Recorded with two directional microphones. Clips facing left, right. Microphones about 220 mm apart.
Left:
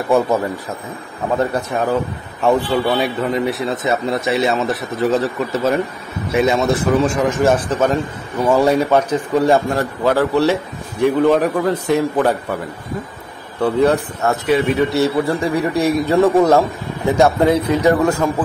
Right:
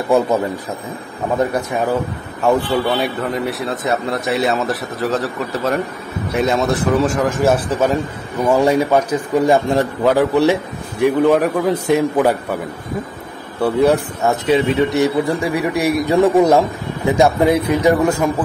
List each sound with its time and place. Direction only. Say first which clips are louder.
1.4 s a man's voice: right 2 dB; 15° right (ahead or behind)
2.4 s a man's voice: even; centre (ahead or behind)
13.6 s a man's voice: right 1 dB; centre (ahead or behind)
14.4 s a man's voice: right 1 dB; 25° right (ahead or behind)